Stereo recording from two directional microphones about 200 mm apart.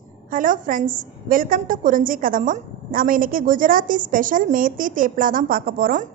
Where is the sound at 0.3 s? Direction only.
40° right (ahead or behind).